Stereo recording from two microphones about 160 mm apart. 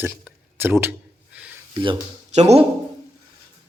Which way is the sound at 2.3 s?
45° right (ahead or behind).